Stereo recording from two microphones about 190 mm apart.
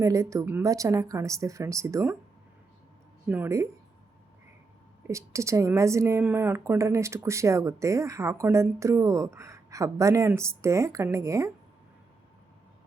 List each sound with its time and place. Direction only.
0.0 s speech: 15° right (ahead or behind)
3.2 s speech: 10° right (ahead or behind)
5.0 s speech: 15° right (ahead or behind)